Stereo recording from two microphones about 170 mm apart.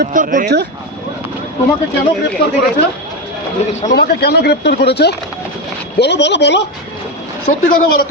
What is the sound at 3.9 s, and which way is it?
A man's voice, 70° left (ahead or behind).